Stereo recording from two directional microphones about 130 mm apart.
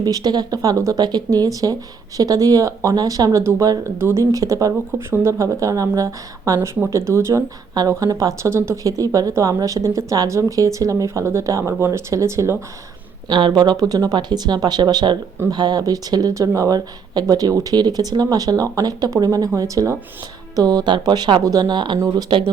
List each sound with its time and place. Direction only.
0.0 s speech: 30° right (ahead or behind)
13.2 s speech: 35° right (ahead or behind)
21.9 s speech: 25° right (ahead or behind)